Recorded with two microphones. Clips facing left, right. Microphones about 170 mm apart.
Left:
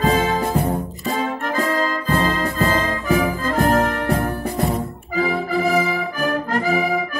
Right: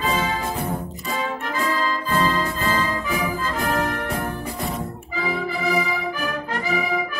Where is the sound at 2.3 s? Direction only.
45° left (ahead or behind).